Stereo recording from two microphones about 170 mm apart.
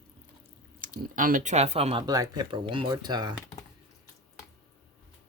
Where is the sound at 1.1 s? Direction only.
50° right (ahead or behind); by 2.0 s 35° right (ahead or behind).